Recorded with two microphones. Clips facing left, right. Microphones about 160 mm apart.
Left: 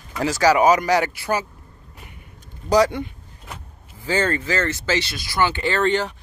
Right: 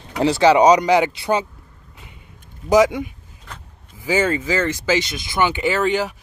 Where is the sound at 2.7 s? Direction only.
15° right (ahead or behind).